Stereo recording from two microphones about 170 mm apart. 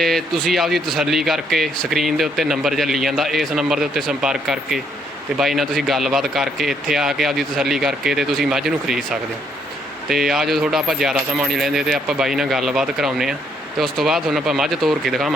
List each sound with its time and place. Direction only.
0.0 s speech: centre (ahead or behind)
10.1 s speech: centre (ahead or behind)